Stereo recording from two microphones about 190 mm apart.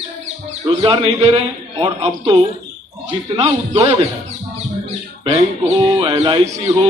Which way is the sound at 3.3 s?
25° right (ahead or behind).